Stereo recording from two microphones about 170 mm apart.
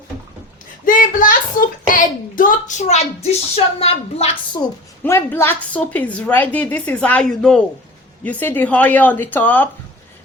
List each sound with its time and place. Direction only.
0.9 s a sound: 50° left (ahead or behind)
3.2 s speech: 35° left (ahead or behind)
5.0 s a woman's voice: 15° left (ahead or behind)